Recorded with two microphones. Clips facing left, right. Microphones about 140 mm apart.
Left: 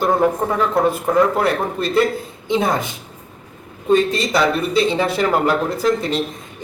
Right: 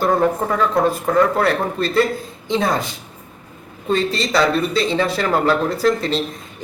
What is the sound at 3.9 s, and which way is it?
Speech, 15° left (ahead or behind).